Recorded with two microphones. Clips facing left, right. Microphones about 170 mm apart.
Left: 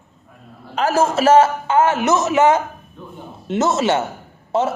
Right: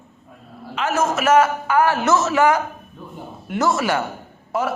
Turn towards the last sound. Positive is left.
turn(degrees=25)  # may be behind; listen again after turning